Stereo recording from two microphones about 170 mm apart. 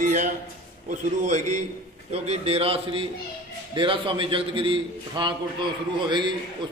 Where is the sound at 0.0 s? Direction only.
45° right (ahead or behind).